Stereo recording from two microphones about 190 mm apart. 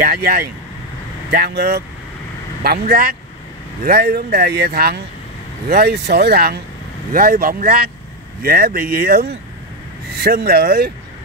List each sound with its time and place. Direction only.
0.0 s speech: 50° right (ahead or behind)
1.5 s speech: 55° right (ahead or behind)